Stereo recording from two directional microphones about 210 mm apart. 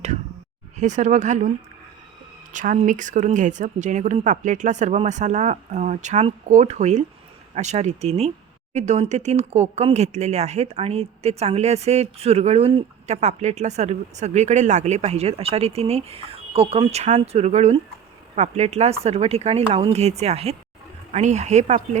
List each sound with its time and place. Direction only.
0.8 s speech: 35° right (ahead or behind)
2.5 s speech: 35° right (ahead or behind)